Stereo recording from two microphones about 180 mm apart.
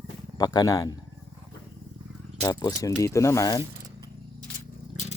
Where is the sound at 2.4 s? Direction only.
20° left (ahead or behind).